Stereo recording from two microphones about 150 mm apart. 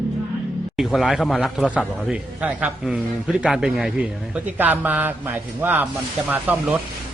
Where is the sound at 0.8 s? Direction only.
Centre (ahead or behind).